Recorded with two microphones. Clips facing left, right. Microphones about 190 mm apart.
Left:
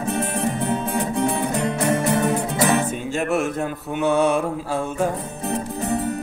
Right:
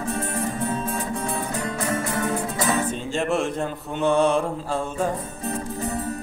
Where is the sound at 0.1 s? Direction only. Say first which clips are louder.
Left 5 dB; 70° left (ahead or behind).